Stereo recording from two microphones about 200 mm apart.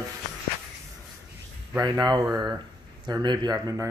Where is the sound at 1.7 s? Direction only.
20° right (ahead or behind).